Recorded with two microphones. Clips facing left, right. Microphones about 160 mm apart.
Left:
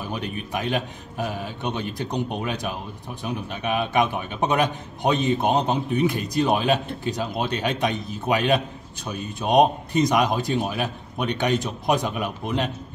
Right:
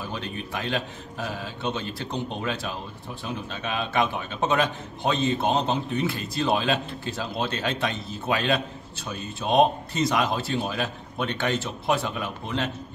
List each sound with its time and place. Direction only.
0.1 s a man's voice: 15° left (ahead or behind)